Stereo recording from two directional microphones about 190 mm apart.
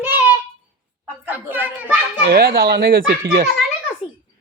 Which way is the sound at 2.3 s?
55° right (ahead or behind).